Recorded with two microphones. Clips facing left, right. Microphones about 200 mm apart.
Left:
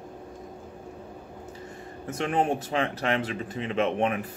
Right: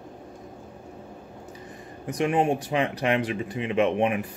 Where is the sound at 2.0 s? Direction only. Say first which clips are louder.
Right 3 dB; 15° right (ahead or behind).